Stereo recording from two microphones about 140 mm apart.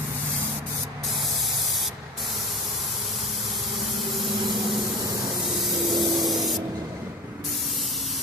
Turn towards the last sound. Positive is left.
turn(degrees=0)  # may be behind; listen again after turning